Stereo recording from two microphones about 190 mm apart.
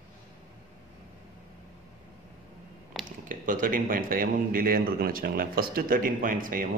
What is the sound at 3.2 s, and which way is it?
A man's voice, 45° right (ahead or behind).